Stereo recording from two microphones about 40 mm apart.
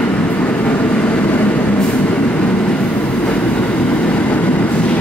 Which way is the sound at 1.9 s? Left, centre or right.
Left.